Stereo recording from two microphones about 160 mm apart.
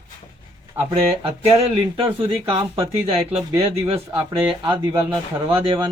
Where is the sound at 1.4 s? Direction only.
35° right (ahead or behind).